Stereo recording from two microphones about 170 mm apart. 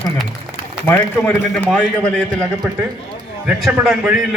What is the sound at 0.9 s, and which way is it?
Speech, 10° left (ahead or behind).